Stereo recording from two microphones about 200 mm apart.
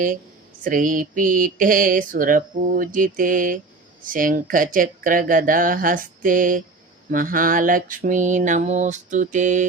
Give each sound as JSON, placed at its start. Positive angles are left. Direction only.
{"t": 0.6, "sound": "speech", "side_deg": -40}
{"t": 7.1, "sound": "mantra", "side_deg": -45}